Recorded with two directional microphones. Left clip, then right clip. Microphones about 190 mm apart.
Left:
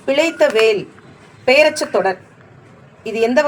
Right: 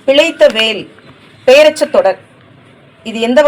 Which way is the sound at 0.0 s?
20° right (ahead or behind).